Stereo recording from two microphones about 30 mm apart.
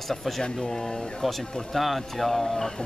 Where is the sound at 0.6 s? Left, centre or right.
Centre.